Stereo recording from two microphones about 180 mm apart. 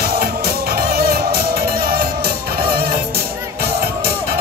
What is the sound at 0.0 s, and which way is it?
Music, 55° right (ahead or behind).